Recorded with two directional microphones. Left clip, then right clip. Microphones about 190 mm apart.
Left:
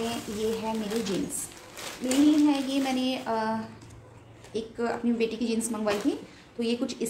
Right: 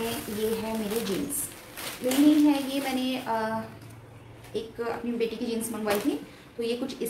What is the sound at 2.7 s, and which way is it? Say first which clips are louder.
Speech: left 1 dB; 40° left (ahead or behind).